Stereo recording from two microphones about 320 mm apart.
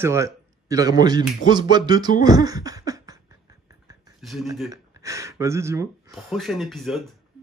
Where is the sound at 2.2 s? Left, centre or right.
Centre.